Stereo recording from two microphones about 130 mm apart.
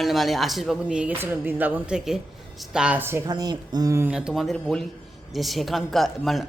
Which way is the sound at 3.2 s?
30° right (ahead or behind).